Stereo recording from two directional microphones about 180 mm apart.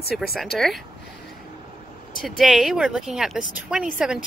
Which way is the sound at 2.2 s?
Centre (ahead or behind).